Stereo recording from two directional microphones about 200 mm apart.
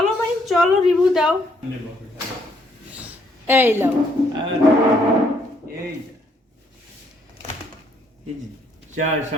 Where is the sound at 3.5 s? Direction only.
10° right (ahead or behind).